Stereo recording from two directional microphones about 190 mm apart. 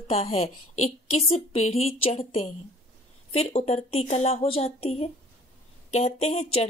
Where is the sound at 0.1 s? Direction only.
35° left (ahead or behind).